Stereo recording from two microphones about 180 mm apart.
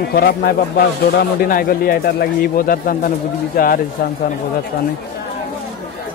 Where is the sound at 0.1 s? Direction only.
60° left (ahead or behind).